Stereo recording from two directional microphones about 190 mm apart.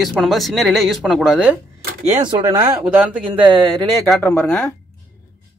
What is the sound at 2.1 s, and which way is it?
Speech, 25° right (ahead or behind).